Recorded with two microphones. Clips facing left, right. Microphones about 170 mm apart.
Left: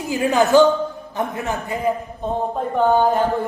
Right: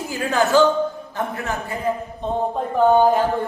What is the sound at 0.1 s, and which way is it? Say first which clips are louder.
A man's voice: left 3 dB; 20° left (ahead or behind).